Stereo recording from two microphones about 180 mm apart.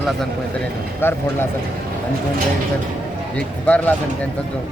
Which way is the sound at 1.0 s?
10° left (ahead or behind).